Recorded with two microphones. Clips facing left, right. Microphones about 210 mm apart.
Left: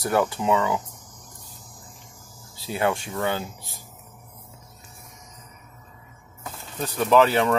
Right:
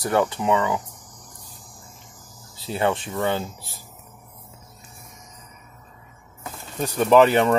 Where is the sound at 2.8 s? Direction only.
10° left (ahead or behind).